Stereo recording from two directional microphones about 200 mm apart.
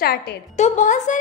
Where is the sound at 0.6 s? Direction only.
40° left (ahead or behind).